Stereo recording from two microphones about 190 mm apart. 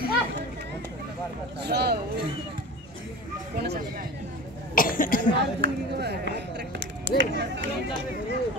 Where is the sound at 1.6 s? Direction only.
55° right (ahead or behind).